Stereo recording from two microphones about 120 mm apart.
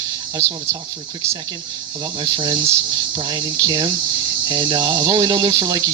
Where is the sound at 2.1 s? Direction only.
40° right (ahead or behind).